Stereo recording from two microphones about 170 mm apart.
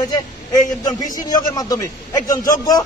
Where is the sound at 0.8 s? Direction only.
25° left (ahead or behind).